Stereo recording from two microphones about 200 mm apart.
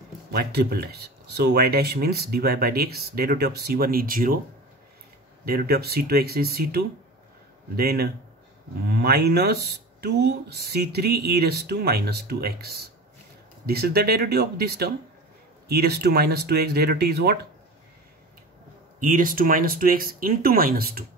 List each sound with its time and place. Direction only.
0.3 s speech: 55° right (ahead or behind)
5.4 s speech: 50° right (ahead or behind)
18.9 s speech: 45° right (ahead or behind)